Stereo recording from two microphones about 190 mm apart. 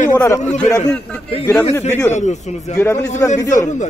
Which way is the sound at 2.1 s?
40° left (ahead or behind).